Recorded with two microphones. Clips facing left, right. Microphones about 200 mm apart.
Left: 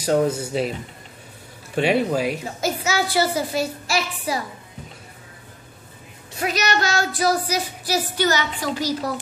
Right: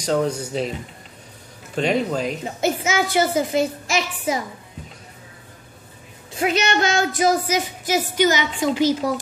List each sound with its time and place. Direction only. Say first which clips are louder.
0.0 s speech: left 2 dB; 5° left (ahead or behind)
1.8 s speech: left 1 dB; 5° left (ahead or behind)
2.4 s speech: right 3 dB; 20° right (ahead or behind)
6.3 s speech: right 3 dB; 25° right (ahead or behind)